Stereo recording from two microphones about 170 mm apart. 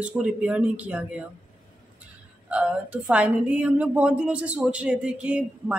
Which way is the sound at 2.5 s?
5° right (ahead or behind).